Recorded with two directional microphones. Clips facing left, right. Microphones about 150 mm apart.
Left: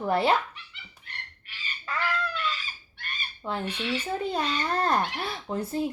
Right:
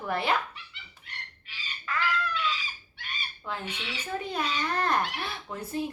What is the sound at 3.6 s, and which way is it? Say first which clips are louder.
Speech: left 6 dB; 5° right (ahead or behind).